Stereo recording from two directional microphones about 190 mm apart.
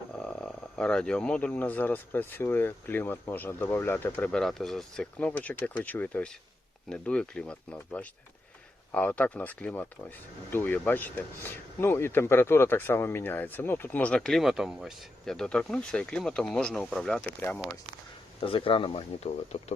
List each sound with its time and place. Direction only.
0.2 s speech: 5° left (ahead or behind)
18.3 s speech: 30° left (ahead or behind)